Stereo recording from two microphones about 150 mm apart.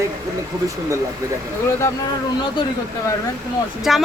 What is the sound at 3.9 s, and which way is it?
Speech, centre (ahead or behind).